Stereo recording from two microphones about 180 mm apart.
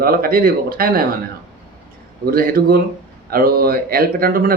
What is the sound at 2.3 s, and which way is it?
Speech, 55° right (ahead or behind).